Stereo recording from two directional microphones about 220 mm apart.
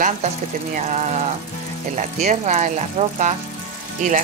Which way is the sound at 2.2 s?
30° right (ahead or behind).